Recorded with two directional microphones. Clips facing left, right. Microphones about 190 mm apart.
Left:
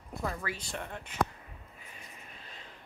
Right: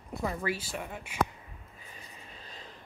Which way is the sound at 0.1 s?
5° right (ahead or behind).